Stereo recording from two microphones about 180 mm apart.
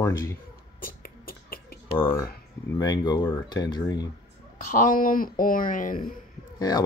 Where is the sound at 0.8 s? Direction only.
55° left (ahead or behind).